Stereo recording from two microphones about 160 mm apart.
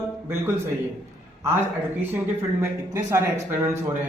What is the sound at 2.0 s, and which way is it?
Speech, 15° right (ahead or behind).